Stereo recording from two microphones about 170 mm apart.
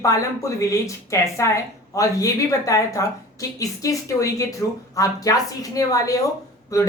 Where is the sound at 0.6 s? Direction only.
20° left (ahead or behind).